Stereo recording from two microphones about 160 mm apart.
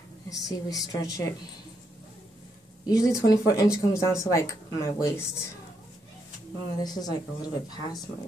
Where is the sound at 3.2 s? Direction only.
20° left (ahead or behind).